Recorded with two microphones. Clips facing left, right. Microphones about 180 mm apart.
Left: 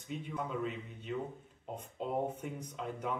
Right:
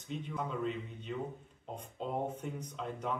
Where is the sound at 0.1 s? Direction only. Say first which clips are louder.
Even; 5° left (ahead or behind).